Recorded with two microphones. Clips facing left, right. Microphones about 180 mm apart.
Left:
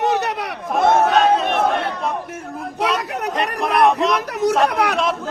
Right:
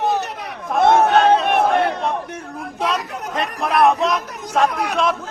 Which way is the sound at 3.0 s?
70° left (ahead or behind).